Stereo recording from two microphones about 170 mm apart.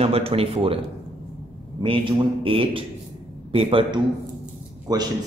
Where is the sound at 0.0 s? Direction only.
35° right (ahead or behind).